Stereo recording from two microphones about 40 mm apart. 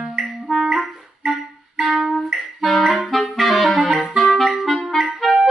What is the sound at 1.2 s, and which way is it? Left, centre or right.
Clarinet, right.